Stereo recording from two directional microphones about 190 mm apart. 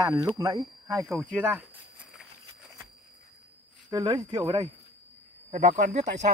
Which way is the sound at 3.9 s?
25° right (ahead or behind).